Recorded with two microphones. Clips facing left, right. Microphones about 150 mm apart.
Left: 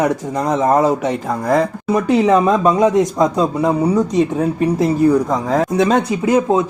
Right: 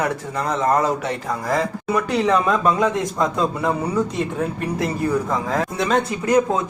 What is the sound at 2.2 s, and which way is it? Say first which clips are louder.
Speech: left 3 dB; 20° left (ahead or behind).